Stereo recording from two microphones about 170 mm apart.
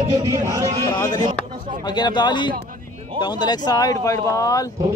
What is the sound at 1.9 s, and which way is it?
Speech, 25° left (ahead or behind).